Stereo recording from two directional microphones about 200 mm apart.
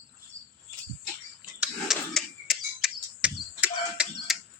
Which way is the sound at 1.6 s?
Centre (ahead or behind).